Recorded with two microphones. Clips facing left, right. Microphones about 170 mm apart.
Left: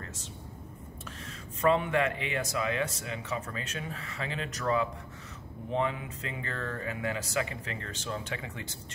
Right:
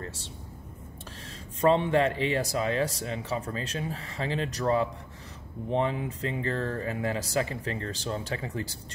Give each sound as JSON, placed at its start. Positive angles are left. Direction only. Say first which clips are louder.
{"t": 1.6, "sound": "speech", "louder": "right 3 dB", "side_deg": -30}